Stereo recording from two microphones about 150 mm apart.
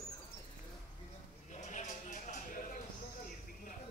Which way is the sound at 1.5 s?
50° left (ahead or behind).